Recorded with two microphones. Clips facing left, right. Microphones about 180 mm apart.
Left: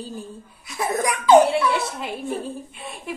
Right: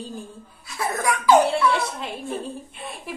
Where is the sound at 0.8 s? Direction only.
20° left (ahead or behind).